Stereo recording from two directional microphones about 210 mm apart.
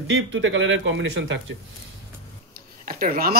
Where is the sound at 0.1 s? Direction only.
65° right (ahead or behind).